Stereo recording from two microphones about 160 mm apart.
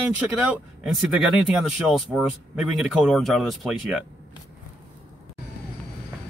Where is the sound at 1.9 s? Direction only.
5° right (ahead or behind).